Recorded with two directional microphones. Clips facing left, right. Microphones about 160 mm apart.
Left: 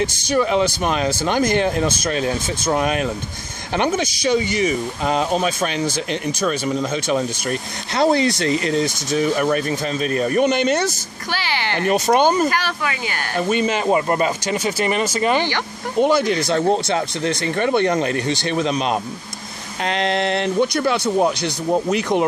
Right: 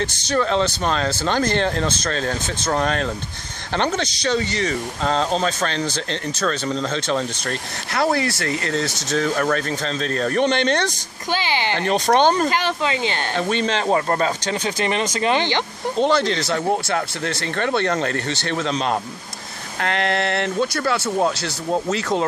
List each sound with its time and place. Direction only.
0.0 s speech: 10° left (ahead or behind)
11.3 s a sound: 20° right (ahead or behind)
11.8 s speech: 10° left (ahead or behind)
12.4 s speech: 20° right (ahead or behind)
13.4 s speech: 10° left (ahead or behind)